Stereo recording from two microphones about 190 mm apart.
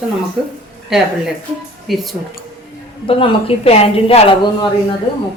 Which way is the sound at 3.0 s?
30° left (ahead or behind).